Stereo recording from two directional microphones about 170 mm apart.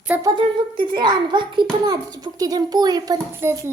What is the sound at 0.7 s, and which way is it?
A child's voice, 25° right (ahead or behind).